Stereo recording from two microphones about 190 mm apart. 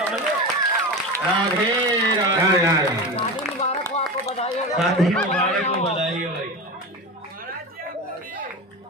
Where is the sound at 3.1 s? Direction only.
35° left (ahead or behind).